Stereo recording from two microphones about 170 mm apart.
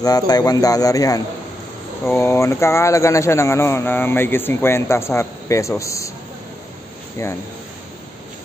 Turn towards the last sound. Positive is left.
turn(degrees=15)  # may be behind; listen again after turning